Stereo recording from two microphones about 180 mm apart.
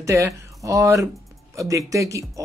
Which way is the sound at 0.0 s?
15° right (ahead or behind).